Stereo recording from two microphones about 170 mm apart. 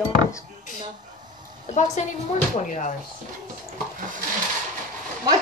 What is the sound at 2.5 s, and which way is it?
Speech, 45° left (ahead or behind).